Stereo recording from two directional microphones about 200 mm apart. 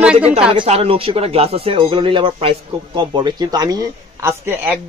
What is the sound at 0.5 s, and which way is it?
Speech, 30° right (ahead or behind).